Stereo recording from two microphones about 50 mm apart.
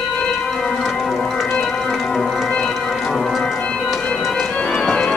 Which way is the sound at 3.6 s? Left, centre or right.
Left.